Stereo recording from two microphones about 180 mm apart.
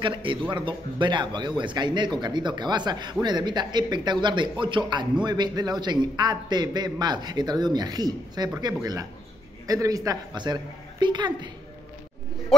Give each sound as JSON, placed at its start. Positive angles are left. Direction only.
{"t": 0.0, "sound": "speech", "side_deg": -30}